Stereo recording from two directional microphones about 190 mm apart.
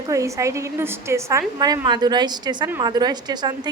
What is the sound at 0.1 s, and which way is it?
A woman's voice, 15° right (ahead or behind).